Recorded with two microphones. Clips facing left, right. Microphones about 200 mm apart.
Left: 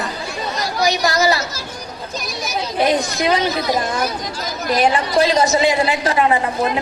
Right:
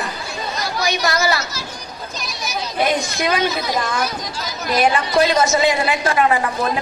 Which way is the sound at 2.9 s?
30° left (ahead or behind).